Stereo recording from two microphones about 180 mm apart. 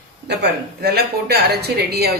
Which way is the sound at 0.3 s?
65° right (ahead or behind).